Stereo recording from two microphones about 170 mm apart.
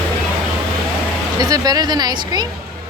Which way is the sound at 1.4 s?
20° right (ahead or behind).